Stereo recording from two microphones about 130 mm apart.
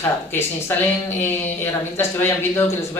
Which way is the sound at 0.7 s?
20° left (ahead or behind).